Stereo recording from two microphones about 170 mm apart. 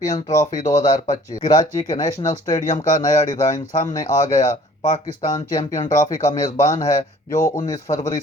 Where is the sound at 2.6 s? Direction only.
45° left (ahead or behind).